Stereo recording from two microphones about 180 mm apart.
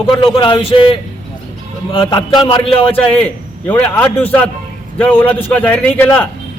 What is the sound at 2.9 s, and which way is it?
A man's voice, 10° left (ahead or behind).